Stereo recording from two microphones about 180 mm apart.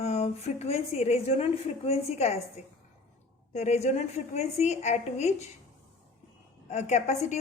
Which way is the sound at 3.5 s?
40° left (ahead or behind).